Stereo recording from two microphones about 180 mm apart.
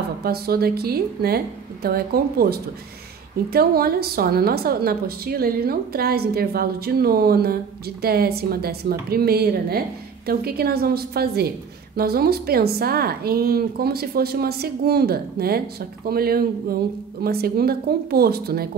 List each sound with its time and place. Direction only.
0.2 s a woman's voice: 55° right (ahead or behind)